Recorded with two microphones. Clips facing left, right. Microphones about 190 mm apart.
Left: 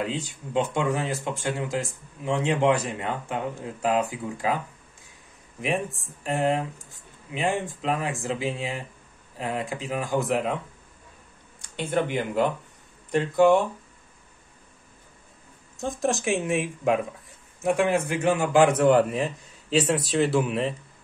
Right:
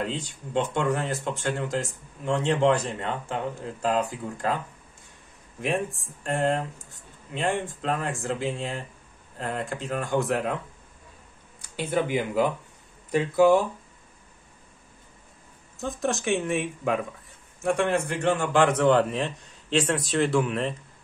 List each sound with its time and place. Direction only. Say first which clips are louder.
0.0 s speech: left 1 dB; 5° left (ahead or behind)
5.6 s a man's voice: even; centre (ahead or behind)
11.6 s a man's voice: even; 5° right (ahead or behind)
15.8 s a man's voice: left 2 dB; centre (ahead or behind)